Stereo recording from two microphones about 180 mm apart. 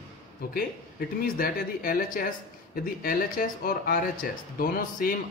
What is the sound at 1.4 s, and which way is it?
Speech, 55° left (ahead or behind).